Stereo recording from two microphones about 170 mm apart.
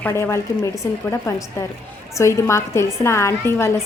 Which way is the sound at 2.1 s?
15° left (ahead or behind).